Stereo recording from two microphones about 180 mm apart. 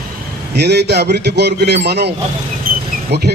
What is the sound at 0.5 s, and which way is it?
A man's voice, 70° right (ahead or behind).